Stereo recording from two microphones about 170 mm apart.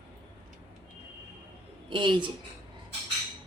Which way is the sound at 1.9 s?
30° right (ahead or behind).